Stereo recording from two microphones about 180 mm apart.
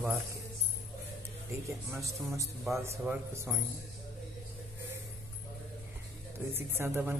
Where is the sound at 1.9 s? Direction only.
15° right (ahead or behind).